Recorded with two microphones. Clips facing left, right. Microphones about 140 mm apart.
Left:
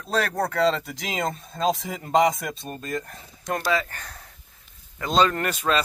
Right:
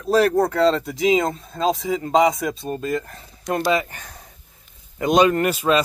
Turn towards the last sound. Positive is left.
turn(degrees=-10)  # may be behind; listen again after turning